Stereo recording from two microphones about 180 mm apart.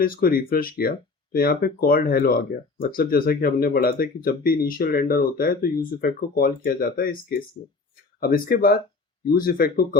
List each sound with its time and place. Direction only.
0.0 s speech: 55° left (ahead or behind)
7.6 s speech: 40° left (ahead or behind)
8.2 s speech: 55° left (ahead or behind)